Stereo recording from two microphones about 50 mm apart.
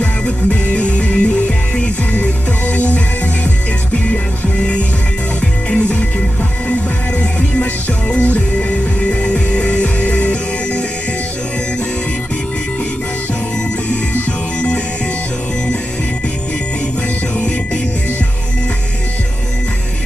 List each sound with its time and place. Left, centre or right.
0.7 s music: left
2.7 s music: left
5.7 s music: left
8.2 s music: left